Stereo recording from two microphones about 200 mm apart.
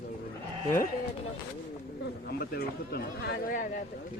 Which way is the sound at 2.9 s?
55° left (ahead or behind).